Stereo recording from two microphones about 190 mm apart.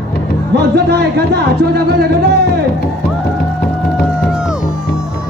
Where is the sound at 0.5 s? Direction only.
60° right (ahead or behind).